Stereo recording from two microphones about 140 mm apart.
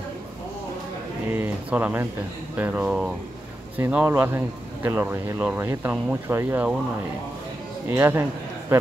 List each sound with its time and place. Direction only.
1.3 s speech: 10° right (ahead or behind)
7.9 s a man's voice: 15° right (ahead or behind)